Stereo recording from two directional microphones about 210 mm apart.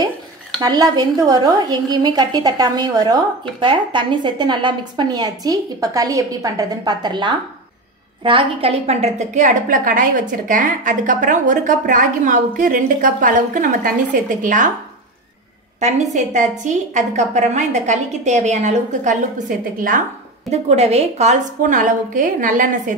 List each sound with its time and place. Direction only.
0.6 s a woman's voice: 20° right (ahead or behind); by 14.7 s 40° right (ahead or behind)
15.8 s a woman's voice: 35° right (ahead or behind)